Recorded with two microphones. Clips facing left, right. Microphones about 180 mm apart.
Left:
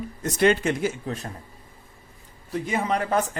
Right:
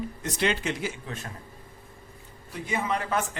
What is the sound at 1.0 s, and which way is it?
Speech, 35° left (ahead or behind).